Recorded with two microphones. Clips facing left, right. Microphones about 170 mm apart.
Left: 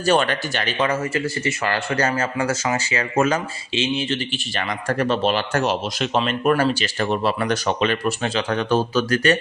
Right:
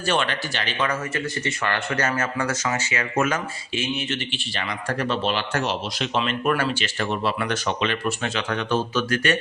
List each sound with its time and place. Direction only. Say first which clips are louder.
0.0 s speech: left 5 dB; 40° left (ahead or behind)
0.8 s speech: left 4 dB; 30° left (ahead or behind)
4.3 s speech: left 4 dB; 45° left (ahead or behind)